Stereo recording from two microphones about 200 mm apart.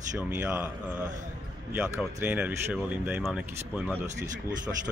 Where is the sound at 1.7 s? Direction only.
5° right (ahead or behind).